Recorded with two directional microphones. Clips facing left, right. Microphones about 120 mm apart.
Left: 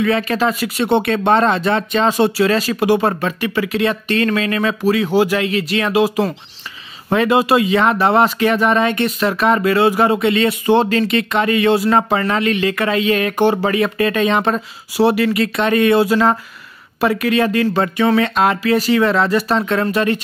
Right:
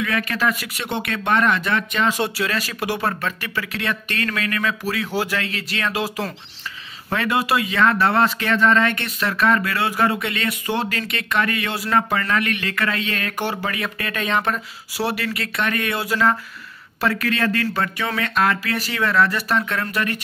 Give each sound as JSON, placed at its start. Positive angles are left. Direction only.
{"t": 0.0, "sound": "speech", "side_deg": 25}